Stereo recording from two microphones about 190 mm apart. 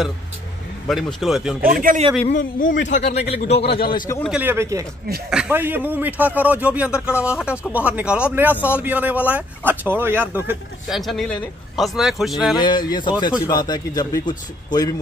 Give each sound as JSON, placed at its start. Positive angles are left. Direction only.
{"t": 0.8, "sound": "speech", "side_deg": 0}
{"t": 1.6, "sound": "speech", "side_deg": -45}
{"t": 2.2, "sound": "a man's voice", "side_deg": 45}
{"t": 3.7, "sound": "a man's voice", "side_deg": 55}
{"t": 4.2, "sound": "a man's voice", "side_deg": -5}
{"t": 10.9, "sound": "speech", "side_deg": 0}
{"t": 12.5, "sound": "a man's voice", "side_deg": 25}